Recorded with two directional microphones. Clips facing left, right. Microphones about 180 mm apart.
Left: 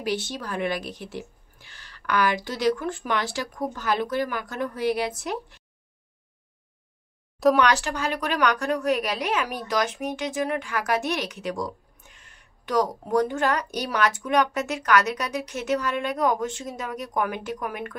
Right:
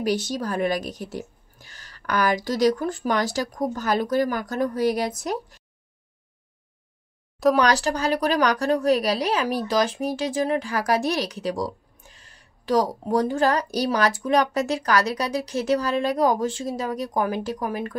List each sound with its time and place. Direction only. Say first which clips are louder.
0.0 s a woman's voice: right 4 dB; 40° right (ahead or behind)
7.5 s a woman's voice: right 2 dB; 35° right (ahead or behind)